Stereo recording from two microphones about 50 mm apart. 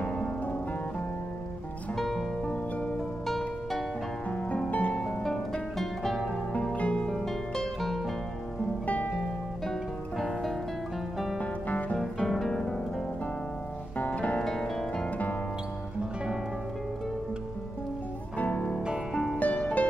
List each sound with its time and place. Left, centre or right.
2.0 s music: centre
2.4 s music: left
3.3 s music: centre
4.3 s music: left
5.0 s music: centre
6.7 s music: left
7.1 s music: centre
8.8 s music: left
10.1 s music: centre
11.3 s music: left
12.0 s music: centre
13.9 s music: left
19.3 s music: left